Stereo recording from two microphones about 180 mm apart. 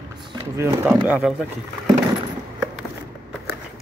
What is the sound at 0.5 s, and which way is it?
Speech, 15° right (ahead or behind).